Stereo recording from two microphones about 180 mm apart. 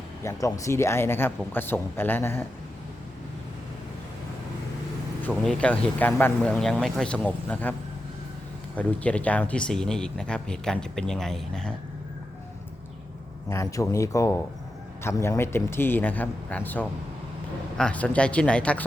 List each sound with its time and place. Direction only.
0.2 s speech: 15° left (ahead or behind)
5.3 s speech: 5° left (ahead or behind)
13.5 s speech: 15° left (ahead or behind)